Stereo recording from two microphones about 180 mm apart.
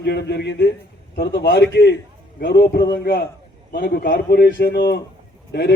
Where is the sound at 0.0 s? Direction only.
65° left (ahead or behind).